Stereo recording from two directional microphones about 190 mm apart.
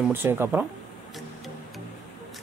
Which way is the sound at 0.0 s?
10° right (ahead or behind).